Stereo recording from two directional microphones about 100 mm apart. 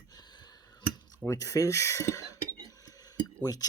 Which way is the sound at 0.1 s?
45° left (ahead or behind).